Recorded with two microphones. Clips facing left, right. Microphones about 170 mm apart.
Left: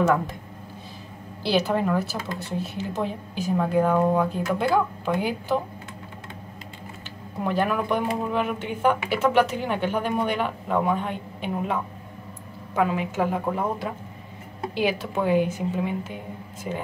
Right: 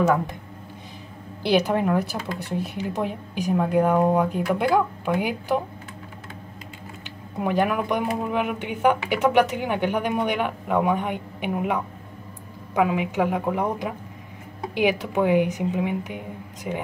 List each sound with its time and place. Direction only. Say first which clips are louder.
0.0 s speech: right 1 dB; 10° right (ahead or behind)
1.4 s speech: right 2 dB; 15° right (ahead or behind)
7.4 s speech: right 1 dB; 15° right (ahead or behind)